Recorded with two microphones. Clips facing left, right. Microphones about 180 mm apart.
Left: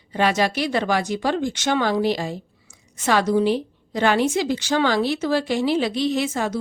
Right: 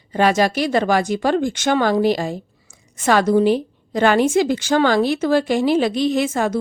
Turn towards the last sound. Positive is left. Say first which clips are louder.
# right 4 dB
turn(degrees=-50)  # may be behind; listen again after turning